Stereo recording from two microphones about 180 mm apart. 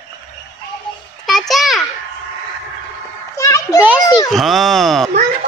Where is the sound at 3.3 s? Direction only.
15° left (ahead or behind).